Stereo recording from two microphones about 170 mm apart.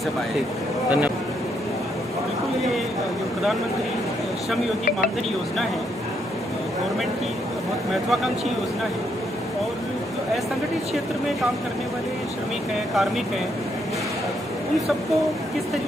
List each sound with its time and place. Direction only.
7.9 s speech: centre (ahead or behind)